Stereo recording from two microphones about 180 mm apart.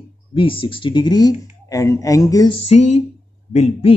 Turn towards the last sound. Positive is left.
turn(degrees=40)  # may be behind; listen again after turning